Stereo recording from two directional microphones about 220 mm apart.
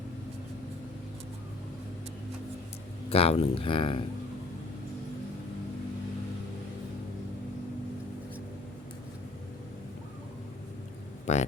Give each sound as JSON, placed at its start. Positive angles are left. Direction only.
{"t": 3.1, "sound": "speech", "side_deg": 25}
{"t": 11.3, "sound": "speech", "side_deg": 30}